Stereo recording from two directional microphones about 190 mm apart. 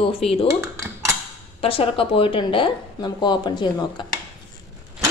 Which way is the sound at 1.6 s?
30° left (ahead or behind).